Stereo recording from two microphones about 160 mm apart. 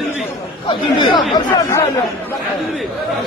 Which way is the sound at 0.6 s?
30° left (ahead or behind).